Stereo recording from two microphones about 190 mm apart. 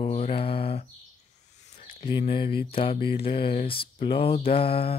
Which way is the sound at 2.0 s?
25° left (ahead or behind).